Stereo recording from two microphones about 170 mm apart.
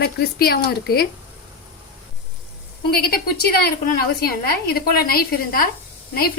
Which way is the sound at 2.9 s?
65° left (ahead or behind).